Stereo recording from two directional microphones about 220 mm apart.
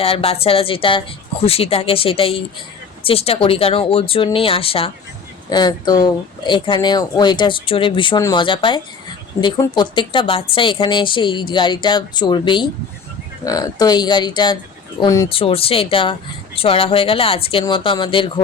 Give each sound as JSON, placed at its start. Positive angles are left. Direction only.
{"t": 0.0, "sound": "speech", "side_deg": 25}
{"t": 15.3, "sound": "speech", "side_deg": 25}